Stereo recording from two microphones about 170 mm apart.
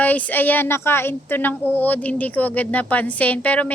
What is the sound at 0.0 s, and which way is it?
A woman's voice, 10° left (ahead or behind).